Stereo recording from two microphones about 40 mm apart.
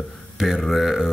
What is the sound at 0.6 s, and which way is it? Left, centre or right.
Speech, centre.